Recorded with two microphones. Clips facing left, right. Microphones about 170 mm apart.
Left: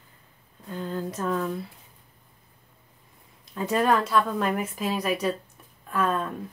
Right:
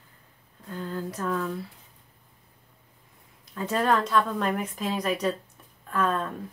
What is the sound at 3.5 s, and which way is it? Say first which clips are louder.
Speech: left 2 dB; 15° left (ahead or behind).